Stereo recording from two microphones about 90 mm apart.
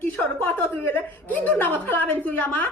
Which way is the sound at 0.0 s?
20° left (ahead or behind).